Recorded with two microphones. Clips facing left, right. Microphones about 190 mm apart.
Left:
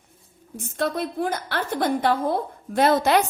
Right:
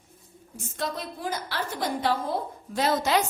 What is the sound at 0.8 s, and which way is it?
A woman's voice, 60° left (ahead or behind).